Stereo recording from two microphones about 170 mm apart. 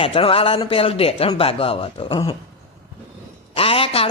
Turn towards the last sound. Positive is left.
turn(degrees=35)  # may be behind; listen again after turning